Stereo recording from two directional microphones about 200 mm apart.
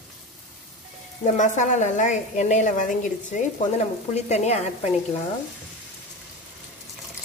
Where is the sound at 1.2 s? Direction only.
40° left (ahead or behind).